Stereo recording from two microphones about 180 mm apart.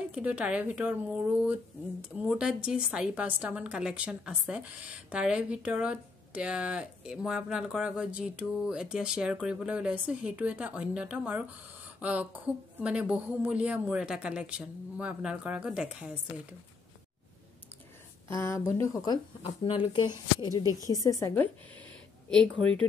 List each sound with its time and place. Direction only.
0.1 s speech: 5° right (ahead or behind)
18.3 s speech: 15° left (ahead or behind)
19.4 s speech: 30° left (ahead or behind); by 22.8 s 5° left (ahead or behind)